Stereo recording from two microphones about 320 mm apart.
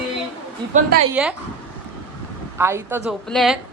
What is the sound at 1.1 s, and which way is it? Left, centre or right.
Speech, centre.